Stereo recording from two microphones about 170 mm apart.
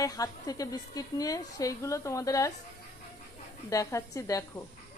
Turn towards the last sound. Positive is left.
turn(degrees=20)  # may be behind; listen again after turning